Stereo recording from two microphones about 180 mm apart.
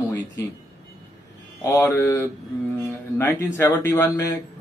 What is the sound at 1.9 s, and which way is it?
A man's voice, 15° left (ahead or behind).